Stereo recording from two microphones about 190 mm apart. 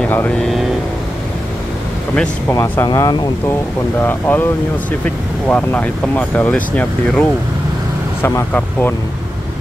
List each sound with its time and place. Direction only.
0.0 s speech: 5° left (ahead or behind)
2.1 s speech: 15° left (ahead or behind)